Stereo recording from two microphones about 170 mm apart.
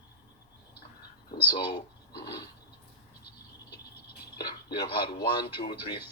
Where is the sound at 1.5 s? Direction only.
25° left (ahead or behind).